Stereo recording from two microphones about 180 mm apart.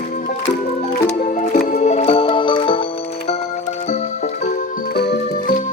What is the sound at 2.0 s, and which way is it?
Music, 30° left (ahead or behind).